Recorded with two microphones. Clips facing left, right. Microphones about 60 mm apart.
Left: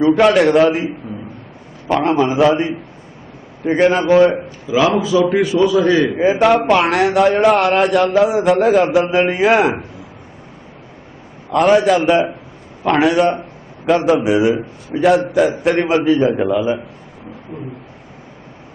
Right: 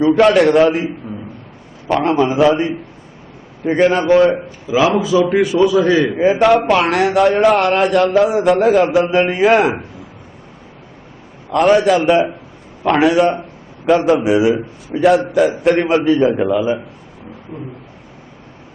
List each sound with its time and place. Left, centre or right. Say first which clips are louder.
0.2 s a man's voice: right 2 dB; centre
1.9 s a man's voice: even; centre
4.9 s a man's voice: right 1 dB; right
6.1 s a man's voice: right 1 dB; centre
11.5 s a man's voice: even; centre